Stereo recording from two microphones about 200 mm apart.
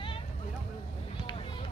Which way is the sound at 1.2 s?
25° left (ahead or behind).